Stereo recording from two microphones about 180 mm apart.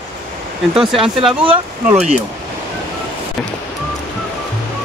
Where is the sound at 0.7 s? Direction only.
Centre (ahead or behind).